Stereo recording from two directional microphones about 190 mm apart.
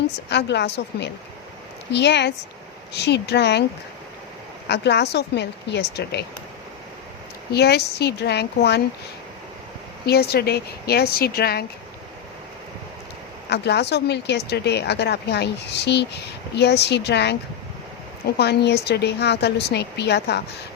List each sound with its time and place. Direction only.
0.3 s a woman's voice: 65° left (ahead or behind)
4.7 s a woman's voice: 65° left (ahead or behind)
7.5 s a woman's voice: 60° left (ahead or behind)
10.1 s a woman's voice: 55° left (ahead or behind)
13.5 s a woman's voice: 60° left (ahead or behind)
18.3 s a woman's voice: 60° left (ahead or behind)